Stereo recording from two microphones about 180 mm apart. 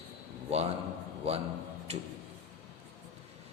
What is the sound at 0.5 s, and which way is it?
Speech, 35° right (ahead or behind).